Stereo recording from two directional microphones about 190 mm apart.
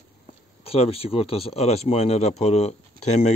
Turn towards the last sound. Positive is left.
turn(degrees=35)  # may be behind; listen again after turning